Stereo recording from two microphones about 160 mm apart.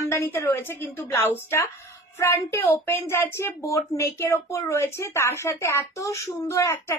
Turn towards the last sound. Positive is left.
turn(degrees=15)  # may be behind; listen again after turning